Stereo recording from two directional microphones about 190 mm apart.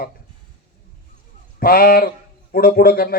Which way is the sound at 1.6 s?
50° left (ahead or behind).